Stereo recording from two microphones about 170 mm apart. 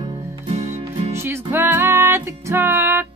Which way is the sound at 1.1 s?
15° right (ahead or behind).